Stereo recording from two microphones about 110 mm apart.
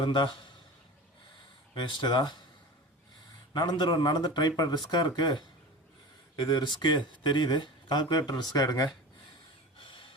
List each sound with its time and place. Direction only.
0.0 s speech: 45° left (ahead or behind)
1.7 s speech: 45° left (ahead or behind)
3.5 s speech: 40° left (ahead or behind)
9.8 s gasp: 50° left (ahead or behind)